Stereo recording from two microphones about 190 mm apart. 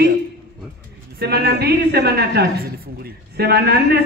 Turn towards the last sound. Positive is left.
turn(degrees=-55)  # may be behind; listen again after turning